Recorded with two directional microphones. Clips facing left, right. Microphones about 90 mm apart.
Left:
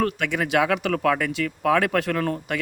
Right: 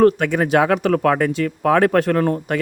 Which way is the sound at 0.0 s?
40° right (ahead or behind).